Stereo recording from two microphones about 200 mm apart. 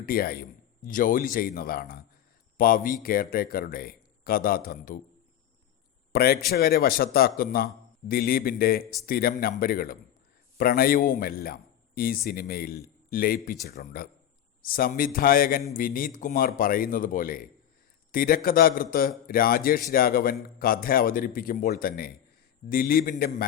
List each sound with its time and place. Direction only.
0.0 s a man's voice: 45° left (ahead or behind)
6.1 s a man's voice: 50° left (ahead or behind)